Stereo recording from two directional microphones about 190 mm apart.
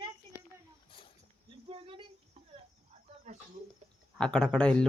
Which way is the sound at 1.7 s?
30° right (ahead or behind).